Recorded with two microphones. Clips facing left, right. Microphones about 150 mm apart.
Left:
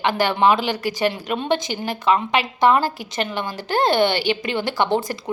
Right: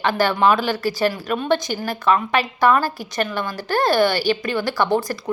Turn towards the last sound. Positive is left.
turn(degrees=20)  # may be behind; listen again after turning